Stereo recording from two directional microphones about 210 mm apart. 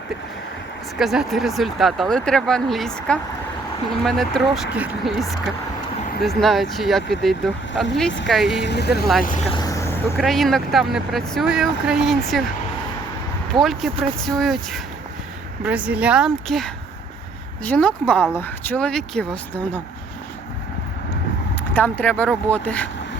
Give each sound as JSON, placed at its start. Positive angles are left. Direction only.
{"t": 0.9, "sound": "speech", "side_deg": 0}
{"t": 8.6, "sound": "speech", "side_deg": 50}
{"t": 9.5, "sound": "vehicle", "side_deg": 20}
{"t": 10.2, "sound": "speech", "side_deg": 0}
{"t": 13.6, "sound": "speech", "side_deg": 0}
{"t": 21.7, "sound": "speech", "side_deg": 10}